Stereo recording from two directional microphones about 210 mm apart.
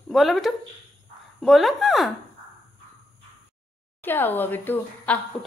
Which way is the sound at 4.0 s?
10° left (ahead or behind).